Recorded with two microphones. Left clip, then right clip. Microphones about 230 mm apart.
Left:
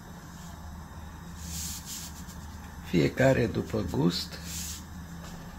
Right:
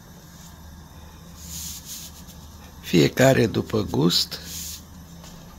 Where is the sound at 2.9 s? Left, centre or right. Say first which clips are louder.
Right 7 dB; right.